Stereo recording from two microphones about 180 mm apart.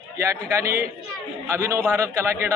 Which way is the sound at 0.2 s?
15° right (ahead or behind).